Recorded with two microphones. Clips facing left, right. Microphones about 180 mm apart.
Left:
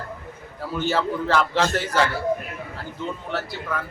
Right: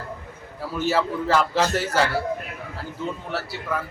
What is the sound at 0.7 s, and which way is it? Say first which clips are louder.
A man's voice: even; 5° right (ahead or behind).